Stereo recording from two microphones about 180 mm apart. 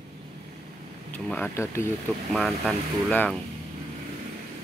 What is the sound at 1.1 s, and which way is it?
Speech, 10° left (ahead or behind).